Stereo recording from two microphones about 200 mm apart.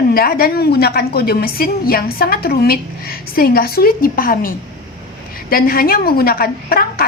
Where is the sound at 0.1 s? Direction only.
50° left (ahead or behind).